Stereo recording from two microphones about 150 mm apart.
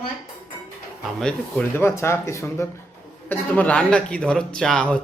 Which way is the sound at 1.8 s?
15° left (ahead or behind).